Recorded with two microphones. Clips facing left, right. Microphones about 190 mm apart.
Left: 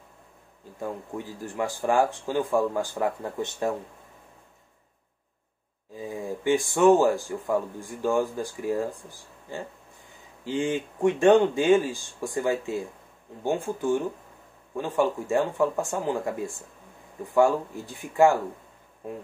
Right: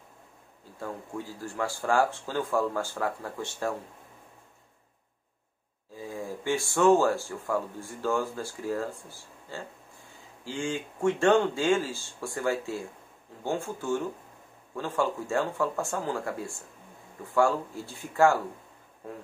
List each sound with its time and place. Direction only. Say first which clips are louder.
0.7 s speech: left 3 dB; 20° left (ahead or behind)
5.9 s speech: left 3 dB; 20° left (ahead or behind)